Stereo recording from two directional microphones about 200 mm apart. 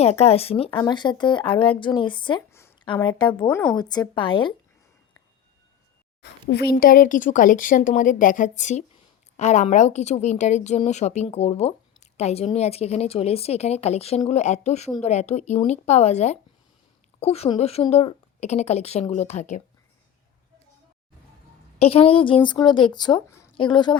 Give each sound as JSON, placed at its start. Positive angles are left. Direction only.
{"t": 0.0, "sound": "speech", "side_deg": 30}
{"t": 2.5, "sound": "a sound", "side_deg": 10}
{"t": 2.8, "sound": "speech", "side_deg": 25}
{"t": 3.5, "sound": "speech", "side_deg": 5}
{"t": 3.8, "sound": "speech", "side_deg": 20}
{"t": 6.5, "sound": "a woman's voice", "side_deg": 50}
{"t": 21.8, "sound": "speech", "side_deg": 30}